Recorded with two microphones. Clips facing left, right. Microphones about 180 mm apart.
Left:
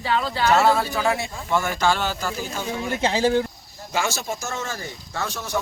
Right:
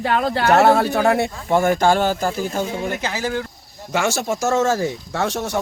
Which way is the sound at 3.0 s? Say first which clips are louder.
Left 4 dB; 25° left (ahead or behind).